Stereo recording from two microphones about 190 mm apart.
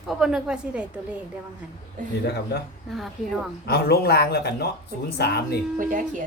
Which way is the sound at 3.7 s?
60° left (ahead or behind).